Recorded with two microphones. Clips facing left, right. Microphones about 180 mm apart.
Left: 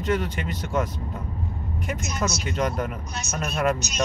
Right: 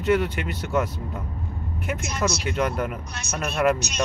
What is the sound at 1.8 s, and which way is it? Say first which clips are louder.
Speech: right 2 dB; 55° right (ahead or behind).